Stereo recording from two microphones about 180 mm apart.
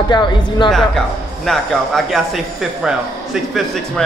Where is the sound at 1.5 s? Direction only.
Centre (ahead or behind).